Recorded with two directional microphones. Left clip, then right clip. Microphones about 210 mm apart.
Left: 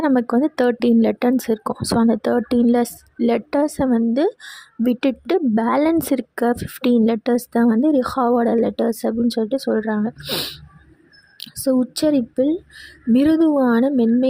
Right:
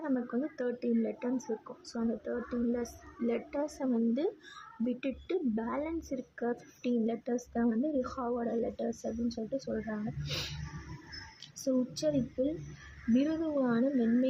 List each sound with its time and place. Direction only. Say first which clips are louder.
0.0 s speech: left 17 dB; 45° left (ahead or behind)
11.3 s a sound: left 13 dB; 45° left (ahead or behind)
13.1 s speech: left 16 dB; 45° left (ahead or behind)